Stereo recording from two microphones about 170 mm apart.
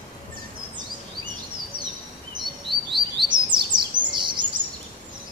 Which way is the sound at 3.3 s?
25° right (ahead or behind).